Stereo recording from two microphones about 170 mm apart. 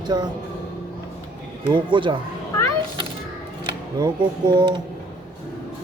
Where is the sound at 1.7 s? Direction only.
30° right (ahead or behind).